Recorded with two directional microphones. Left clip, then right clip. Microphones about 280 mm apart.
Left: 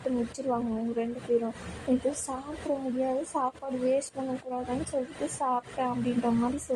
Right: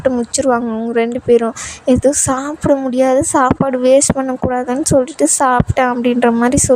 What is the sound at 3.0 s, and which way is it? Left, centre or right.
Speech, right.